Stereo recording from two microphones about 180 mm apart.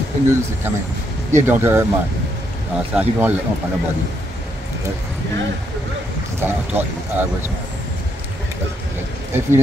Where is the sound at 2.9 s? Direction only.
10° right (ahead or behind).